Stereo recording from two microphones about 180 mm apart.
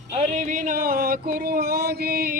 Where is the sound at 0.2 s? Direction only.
45° right (ahead or behind).